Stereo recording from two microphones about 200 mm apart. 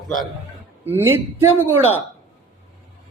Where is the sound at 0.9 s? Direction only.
10° right (ahead or behind).